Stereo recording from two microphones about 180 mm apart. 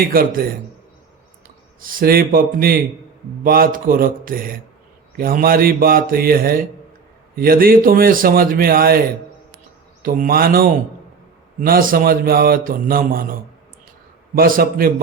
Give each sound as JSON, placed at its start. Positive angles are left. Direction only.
{"t": 0.1, "sound": "a man's voice", "side_deg": -55}
{"t": 1.8, "sound": "a man's voice", "side_deg": -50}